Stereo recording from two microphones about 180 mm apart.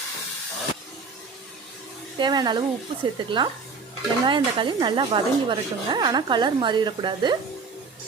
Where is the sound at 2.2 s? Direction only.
25° right (ahead or behind).